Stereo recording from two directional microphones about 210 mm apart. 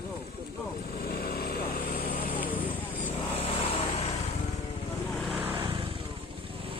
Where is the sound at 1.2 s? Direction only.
45° left (ahead or behind).